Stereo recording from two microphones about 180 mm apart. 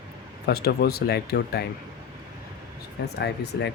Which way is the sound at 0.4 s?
60° left (ahead or behind).